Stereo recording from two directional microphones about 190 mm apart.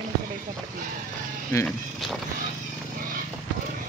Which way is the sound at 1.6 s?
Centre (ahead or behind).